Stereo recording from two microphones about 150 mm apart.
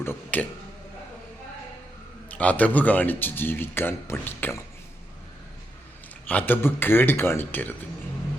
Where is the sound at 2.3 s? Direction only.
10° left (ahead or behind).